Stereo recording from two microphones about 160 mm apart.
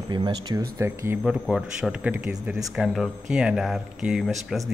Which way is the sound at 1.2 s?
Centre (ahead or behind).